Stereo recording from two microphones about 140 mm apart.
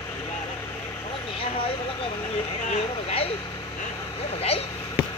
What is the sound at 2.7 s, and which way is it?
Speech, 45° left (ahead or behind).